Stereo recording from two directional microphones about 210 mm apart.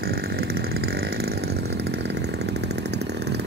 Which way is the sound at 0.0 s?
45° right (ahead or behind).